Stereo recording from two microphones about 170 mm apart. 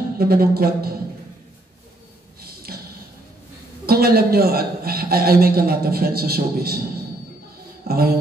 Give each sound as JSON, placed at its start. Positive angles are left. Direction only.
{"t": 0.2, "sound": "a man's voice", "side_deg": -60}
{"t": 2.4, "sound": "a sound", "side_deg": -60}
{"t": 3.8, "sound": "a man's voice", "side_deg": -65}
{"t": 7.8, "sound": "music", "side_deg": -65}